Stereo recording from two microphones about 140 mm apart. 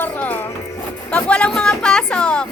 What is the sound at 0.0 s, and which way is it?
Music, 10° left (ahead or behind).